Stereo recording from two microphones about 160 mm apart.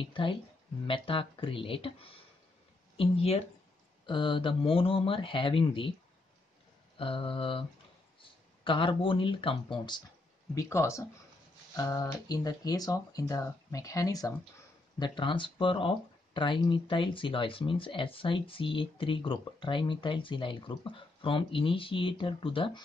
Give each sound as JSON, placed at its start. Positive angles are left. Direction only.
{"t": 0.0, "sound": "speech", "side_deg": 30}
{"t": 3.0, "sound": "speech", "side_deg": 40}
{"t": 7.0, "sound": "speech", "side_deg": 35}
{"t": 10.5, "sound": "speech", "side_deg": 20}